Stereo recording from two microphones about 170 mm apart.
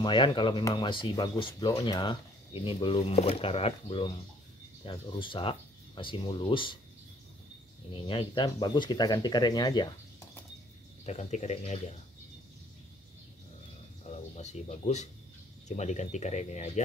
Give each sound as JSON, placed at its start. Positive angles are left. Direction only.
{"t": 0.0, "sound": "speech", "side_deg": 30}
{"t": 7.9, "sound": "speech", "side_deg": 30}
{"t": 11.1, "sound": "speech", "side_deg": 40}
{"t": 14.3, "sound": "speech", "side_deg": 40}